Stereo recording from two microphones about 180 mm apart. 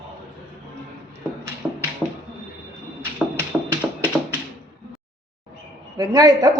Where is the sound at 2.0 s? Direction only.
10° left (ahead or behind).